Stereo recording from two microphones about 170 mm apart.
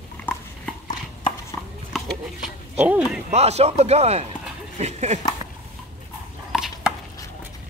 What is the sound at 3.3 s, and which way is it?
Speech, 40° right (ahead or behind).